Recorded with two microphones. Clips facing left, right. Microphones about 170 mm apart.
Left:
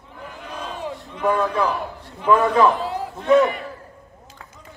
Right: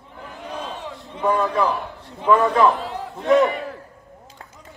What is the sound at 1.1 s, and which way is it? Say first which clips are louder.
Speech: even; 20° right (ahead or behind).